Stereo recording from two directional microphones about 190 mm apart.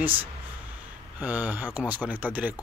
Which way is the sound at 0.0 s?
10° right (ahead or behind).